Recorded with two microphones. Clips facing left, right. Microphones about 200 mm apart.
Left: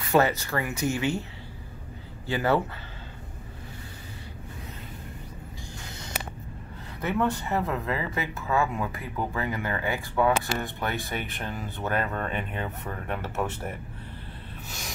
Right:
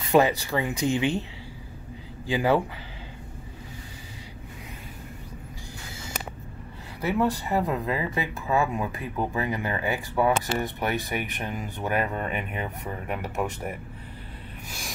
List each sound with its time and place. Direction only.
0.1 s speech: 15° right (ahead or behind)
2.2 s speech: 15° right (ahead or behind)
7.0 s speech: 10° right (ahead or behind)